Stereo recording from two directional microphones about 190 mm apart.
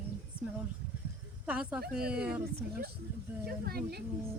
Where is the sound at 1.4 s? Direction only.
5° right (ahead or behind).